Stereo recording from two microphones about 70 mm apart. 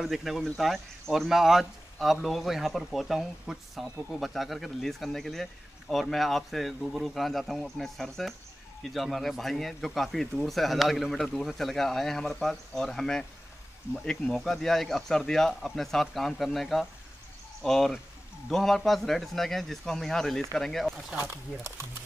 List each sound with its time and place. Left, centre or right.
0.0 s speech: centre
21.3 s speech: right